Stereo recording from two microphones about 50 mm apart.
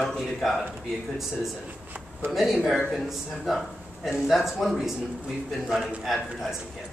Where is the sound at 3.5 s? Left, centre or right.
Centre.